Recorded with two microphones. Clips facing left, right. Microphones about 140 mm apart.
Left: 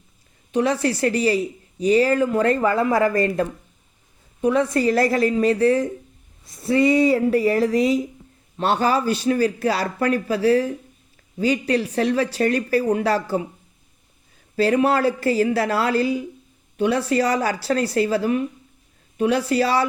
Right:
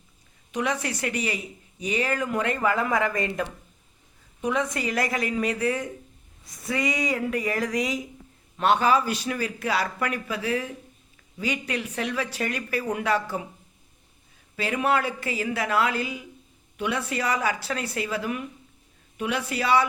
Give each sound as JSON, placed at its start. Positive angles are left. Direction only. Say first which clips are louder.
{"t": 0.5, "sound": "a man's voice", "louder": "left 8 dB", "side_deg": 35}
{"t": 4.4, "sound": "a man's voice", "louder": "left 8 dB", "side_deg": 30}
{"t": 14.5, "sound": "a man's voice", "louder": "left 7 dB", "side_deg": 35}